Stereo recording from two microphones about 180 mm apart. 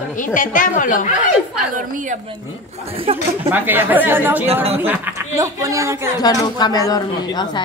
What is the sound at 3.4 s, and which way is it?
Speech, 10° right (ahead or behind).